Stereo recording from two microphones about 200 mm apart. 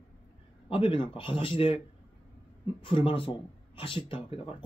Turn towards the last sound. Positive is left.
turn(degrees=25)  # may be behind; listen again after turning